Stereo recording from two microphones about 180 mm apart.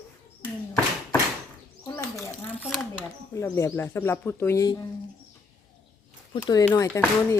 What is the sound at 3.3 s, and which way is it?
Speech, 15° left (ahead or behind).